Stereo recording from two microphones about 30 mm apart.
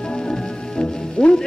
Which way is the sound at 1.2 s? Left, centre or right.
Left.